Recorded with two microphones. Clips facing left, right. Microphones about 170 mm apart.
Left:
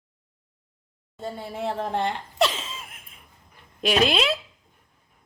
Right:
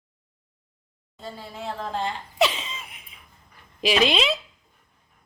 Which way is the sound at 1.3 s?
60° left (ahead or behind).